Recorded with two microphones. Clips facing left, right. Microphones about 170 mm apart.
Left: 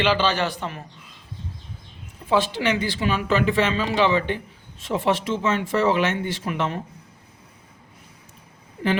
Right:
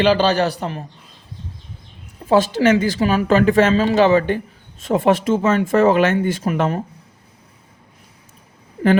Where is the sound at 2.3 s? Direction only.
40° right (ahead or behind).